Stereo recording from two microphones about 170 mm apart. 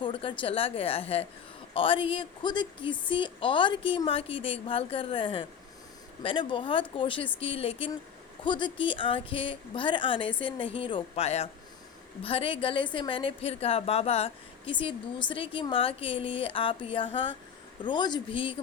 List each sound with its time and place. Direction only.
0.0 s a woman's voice: 30° left (ahead or behind)